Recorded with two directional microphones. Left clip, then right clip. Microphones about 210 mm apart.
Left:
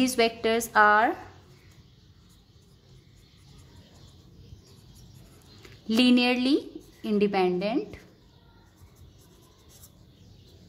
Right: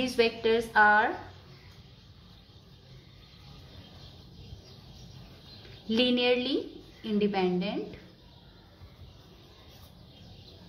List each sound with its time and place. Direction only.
0.0 s a woman's voice: 55° left (ahead or behind)
5.9 s a woman's voice: 55° left (ahead or behind)